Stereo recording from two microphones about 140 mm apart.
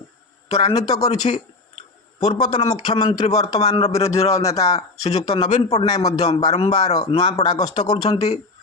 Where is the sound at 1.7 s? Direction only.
50° left (ahead or behind).